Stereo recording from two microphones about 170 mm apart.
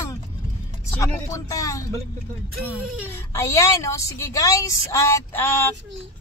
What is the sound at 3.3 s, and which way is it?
A woman's voice, 20° left (ahead or behind).